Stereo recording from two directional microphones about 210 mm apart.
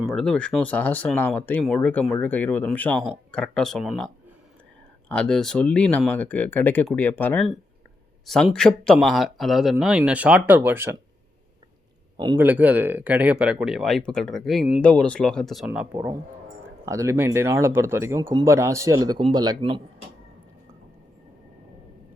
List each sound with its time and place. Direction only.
0.0 s speech: centre (ahead or behind)
12.1 s a man's voice: 20° right (ahead or behind)
12.4 s speech: 10° right (ahead or behind)